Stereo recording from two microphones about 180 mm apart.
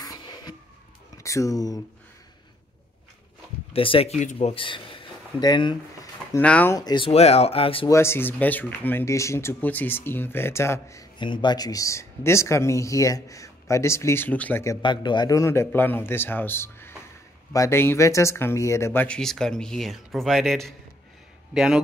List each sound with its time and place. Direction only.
0.0 s a sound: 20° left (ahead or behind)
1.1 s speech: 15° left (ahead or behind)
3.7 s speech: 30° left (ahead or behind)
6.3 s speech: 10° left (ahead or behind)
6.8 s speech: 25° left (ahead or behind)
7.1 s speech: 35° left (ahead or behind)
7.9 s speech: 15° left (ahead or behind); by 21.8 s 5° right (ahead or behind)